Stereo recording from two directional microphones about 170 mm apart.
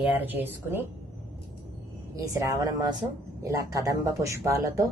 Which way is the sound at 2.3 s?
20° right (ahead or behind).